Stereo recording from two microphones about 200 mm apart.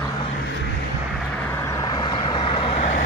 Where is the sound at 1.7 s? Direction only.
20° left (ahead or behind).